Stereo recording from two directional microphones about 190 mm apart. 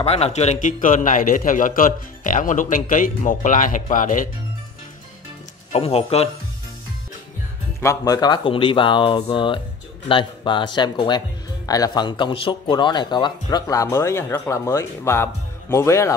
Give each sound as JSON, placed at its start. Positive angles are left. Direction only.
{"t": 0.0, "sound": "a man's voice", "side_deg": 35}
{"t": 5.7, "sound": "speech", "side_deg": 30}
{"t": 7.8, "sound": "speech", "side_deg": 20}